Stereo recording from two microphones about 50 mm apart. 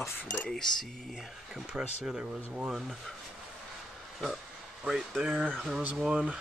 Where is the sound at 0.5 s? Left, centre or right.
Centre.